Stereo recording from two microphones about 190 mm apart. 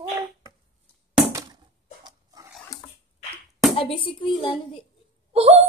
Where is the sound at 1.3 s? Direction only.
20° right (ahead or behind).